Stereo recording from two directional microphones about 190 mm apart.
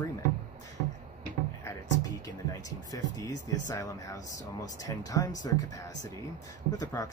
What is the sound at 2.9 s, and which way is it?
Speech, 20° left (ahead or behind).